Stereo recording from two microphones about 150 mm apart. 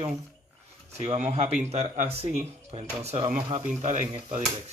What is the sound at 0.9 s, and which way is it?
Speech, 50° right (ahead or behind).